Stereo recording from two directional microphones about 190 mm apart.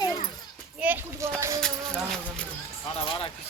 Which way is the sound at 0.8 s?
10° right (ahead or behind).